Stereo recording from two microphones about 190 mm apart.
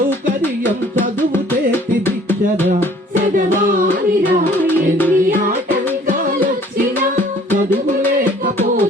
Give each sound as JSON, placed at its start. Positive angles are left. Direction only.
{"t": 3.3, "sound": "music", "side_deg": -45}
{"t": 4.6, "sound": "music", "side_deg": 10}